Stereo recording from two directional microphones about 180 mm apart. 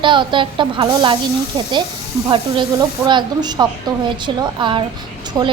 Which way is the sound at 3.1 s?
25° right (ahead or behind).